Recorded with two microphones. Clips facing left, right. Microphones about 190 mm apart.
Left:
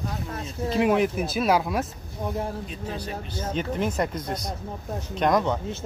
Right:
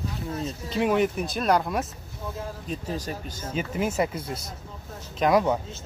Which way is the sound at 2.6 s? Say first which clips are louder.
Right 2 dB; 40° right (ahead or behind).